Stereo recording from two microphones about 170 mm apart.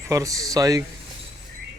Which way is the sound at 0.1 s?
20° right (ahead or behind).